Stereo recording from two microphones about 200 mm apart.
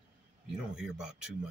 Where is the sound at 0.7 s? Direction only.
Centre (ahead or behind).